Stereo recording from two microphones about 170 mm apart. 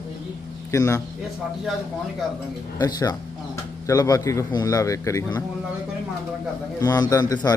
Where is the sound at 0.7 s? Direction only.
15° left (ahead or behind).